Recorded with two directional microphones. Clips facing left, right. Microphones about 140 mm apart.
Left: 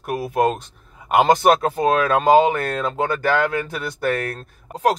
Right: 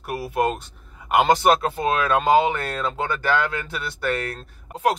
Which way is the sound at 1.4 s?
45° left (ahead or behind).